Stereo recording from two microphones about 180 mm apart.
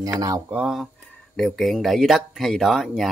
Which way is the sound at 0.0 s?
20° right (ahead or behind).